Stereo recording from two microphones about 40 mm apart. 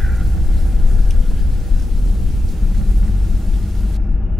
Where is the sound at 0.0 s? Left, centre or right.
Centre.